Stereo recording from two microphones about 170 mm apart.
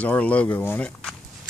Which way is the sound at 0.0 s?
10° left (ahead or behind).